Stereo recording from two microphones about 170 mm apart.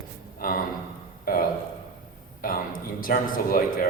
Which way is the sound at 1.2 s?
60° left (ahead or behind).